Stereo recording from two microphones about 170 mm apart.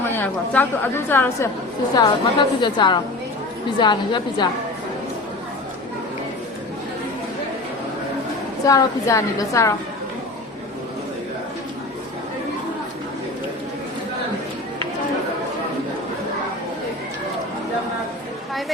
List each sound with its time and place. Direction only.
0.0 s a woman's voice: 10° left (ahead or behind)
2.0 s a woman's voice: 25° left (ahead or behind)
8.6 s a woman's voice: 20° left (ahead or behind)